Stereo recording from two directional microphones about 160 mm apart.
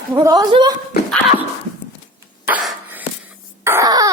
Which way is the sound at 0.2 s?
25° right (ahead or behind).